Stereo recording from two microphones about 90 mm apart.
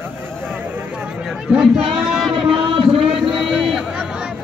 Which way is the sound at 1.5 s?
5° right (ahead or behind).